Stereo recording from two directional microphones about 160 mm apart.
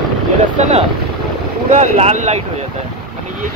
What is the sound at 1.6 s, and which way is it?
Speech, 50° right (ahead or behind).